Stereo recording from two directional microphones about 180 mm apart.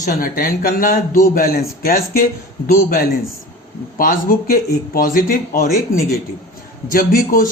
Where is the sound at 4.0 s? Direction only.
50° left (ahead or behind).